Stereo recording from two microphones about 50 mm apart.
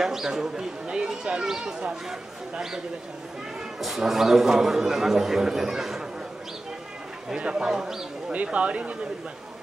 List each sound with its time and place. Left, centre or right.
0.0 s a man's voice: centre
3.8 s a man's voice: centre
7.2 s a man's voice: centre